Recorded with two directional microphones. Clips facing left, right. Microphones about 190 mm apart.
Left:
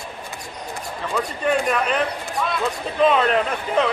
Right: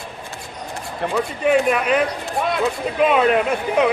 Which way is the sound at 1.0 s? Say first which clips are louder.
Right 4 dB; 60° right (ahead or behind).